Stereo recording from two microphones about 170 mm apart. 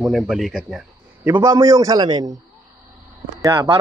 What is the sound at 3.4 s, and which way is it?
Speech, 20° right (ahead or behind).